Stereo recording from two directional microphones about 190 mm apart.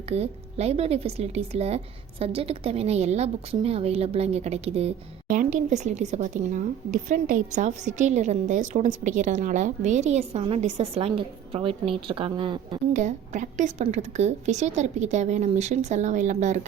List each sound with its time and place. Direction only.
0.1 s a woman's voice: 35° right (ahead or behind)
5.3 s a woman's voice: 40° right (ahead or behind)
12.9 s a woman's voice: 40° right (ahead or behind)